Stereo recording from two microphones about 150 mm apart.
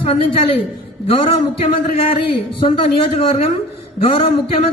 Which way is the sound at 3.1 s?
40° left (ahead or behind).